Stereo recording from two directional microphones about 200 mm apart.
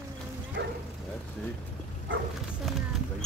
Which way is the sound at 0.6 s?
55° right (ahead or behind).